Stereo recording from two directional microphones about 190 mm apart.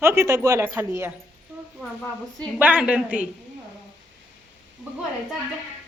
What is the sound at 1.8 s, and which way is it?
Speech, 5° left (ahead or behind).